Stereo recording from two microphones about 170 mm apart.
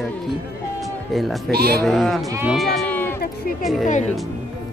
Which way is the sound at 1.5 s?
65° right (ahead or behind).